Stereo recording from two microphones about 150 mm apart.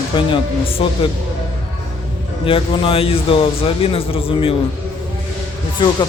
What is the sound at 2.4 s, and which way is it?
Speech, 35° left (ahead or behind).